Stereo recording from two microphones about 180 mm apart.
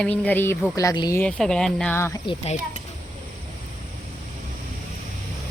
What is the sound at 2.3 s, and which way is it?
Speech, 35° left (ahead or behind).